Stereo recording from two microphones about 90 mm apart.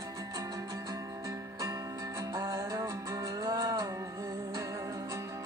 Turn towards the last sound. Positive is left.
turn(degrees=-45)  # may be behind; listen again after turning